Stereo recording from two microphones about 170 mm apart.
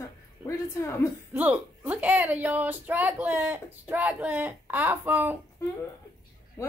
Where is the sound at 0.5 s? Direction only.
20° left (ahead or behind).